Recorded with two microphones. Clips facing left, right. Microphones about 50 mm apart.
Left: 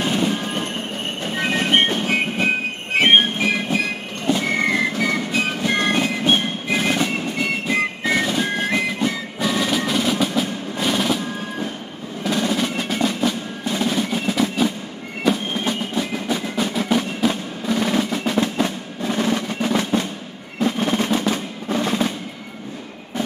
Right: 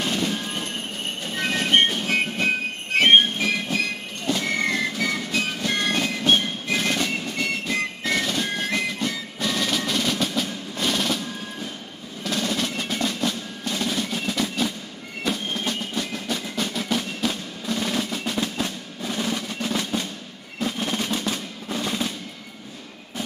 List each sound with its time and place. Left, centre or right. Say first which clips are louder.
0.0 s train: left 5 dB; centre
4.3 s music: left 4 dB; centre
12.2 s percussion: left 5 dB; centre
15.2 s music: left 6 dB; centre
19.1 s percussion: left 6 dB; left
21.7 s music: left 6 dB; left